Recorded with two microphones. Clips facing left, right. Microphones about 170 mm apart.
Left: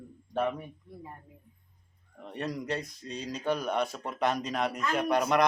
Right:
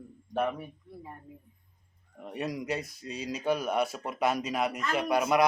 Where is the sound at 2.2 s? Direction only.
10° right (ahead or behind).